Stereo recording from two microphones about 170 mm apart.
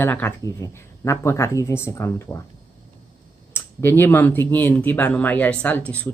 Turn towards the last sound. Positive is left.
turn(degrees=10)  # may be behind; listen again after turning